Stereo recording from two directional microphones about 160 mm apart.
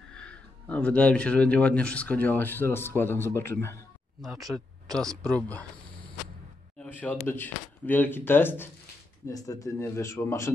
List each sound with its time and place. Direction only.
0.1 s speech: 5° left (ahead or behind)
4.4 s speech: 25° right (ahead or behind)
4.9 s speech: 5° left (ahead or behind)
6.8 s speech: 10° left (ahead or behind)